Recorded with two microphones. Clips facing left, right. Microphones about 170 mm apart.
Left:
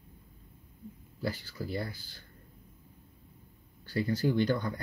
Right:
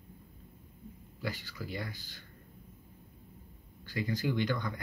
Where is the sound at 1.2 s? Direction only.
40° left (ahead or behind).